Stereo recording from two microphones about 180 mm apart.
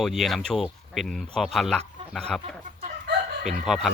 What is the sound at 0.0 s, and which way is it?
Speech, centre (ahead or behind).